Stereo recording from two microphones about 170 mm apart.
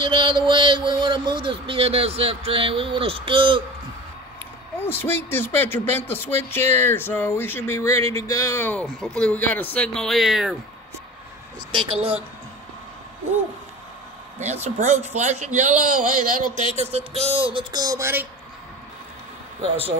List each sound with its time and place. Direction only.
0.0 s speech: 25° right (ahead or behind)
4.7 s speech: 10° left (ahead or behind)
11.7 s speech: 30° right (ahead or behind)
14.4 s a man's voice: 40° right (ahead or behind)
16.7 s speech: 40° right (ahead or behind); by 18.2 s 15° right (ahead or behind)